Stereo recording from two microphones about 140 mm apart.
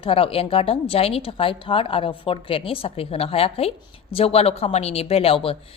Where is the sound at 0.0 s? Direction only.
40° left (ahead or behind).